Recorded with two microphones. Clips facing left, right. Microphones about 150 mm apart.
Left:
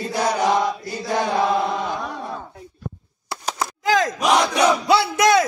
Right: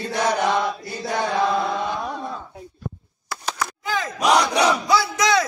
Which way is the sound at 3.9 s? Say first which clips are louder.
Left 9 dB; 90° left.